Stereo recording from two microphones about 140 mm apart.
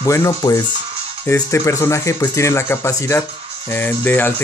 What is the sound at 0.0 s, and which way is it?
Speech, 20° left (ahead or behind).